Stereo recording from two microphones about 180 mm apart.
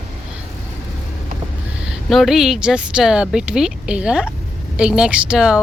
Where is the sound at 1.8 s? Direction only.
Centre (ahead or behind).